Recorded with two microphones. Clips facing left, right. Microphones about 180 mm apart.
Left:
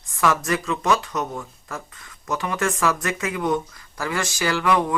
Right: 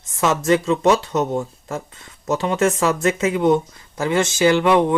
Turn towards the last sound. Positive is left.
turn(degrees=-25)  # may be behind; listen again after turning